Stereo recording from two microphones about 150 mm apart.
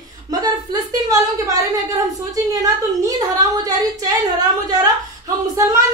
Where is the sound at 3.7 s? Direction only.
25° right (ahead or behind).